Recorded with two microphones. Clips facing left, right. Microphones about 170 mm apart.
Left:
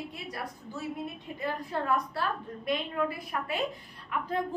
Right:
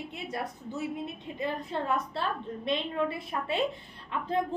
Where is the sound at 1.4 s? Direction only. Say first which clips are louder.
Right 1 dB; 20° right (ahead or behind).